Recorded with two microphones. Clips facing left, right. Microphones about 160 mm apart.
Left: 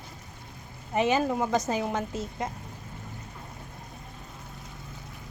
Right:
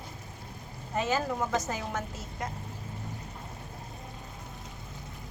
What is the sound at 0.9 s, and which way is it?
A woman's voice, 20° left (ahead or behind).